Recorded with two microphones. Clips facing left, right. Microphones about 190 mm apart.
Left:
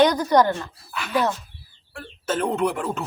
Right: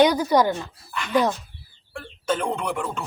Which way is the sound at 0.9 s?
5° left (ahead or behind).